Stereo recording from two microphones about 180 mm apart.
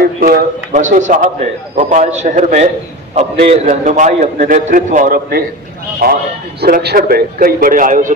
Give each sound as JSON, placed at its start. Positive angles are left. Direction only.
{"t": 0.0, "sound": "a man's voice", "side_deg": -55}